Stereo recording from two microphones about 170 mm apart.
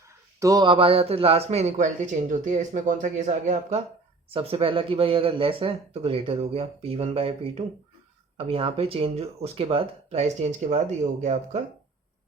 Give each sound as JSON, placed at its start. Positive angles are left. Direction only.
{"t": 0.3, "sound": "a man's voice", "side_deg": -20}